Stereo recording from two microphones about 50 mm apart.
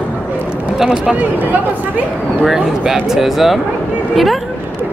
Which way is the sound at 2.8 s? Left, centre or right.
Centre.